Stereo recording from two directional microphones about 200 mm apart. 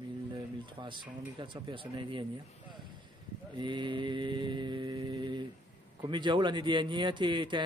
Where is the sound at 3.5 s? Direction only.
20° right (ahead or behind).